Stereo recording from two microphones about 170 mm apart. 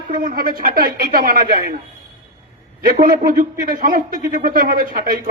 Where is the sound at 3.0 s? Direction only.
55° right (ahead or behind).